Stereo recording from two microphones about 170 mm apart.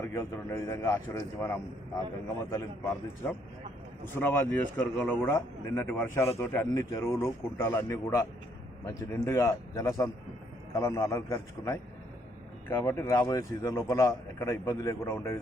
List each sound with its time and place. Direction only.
0.1 s a man's voice: 20° left (ahead or behind)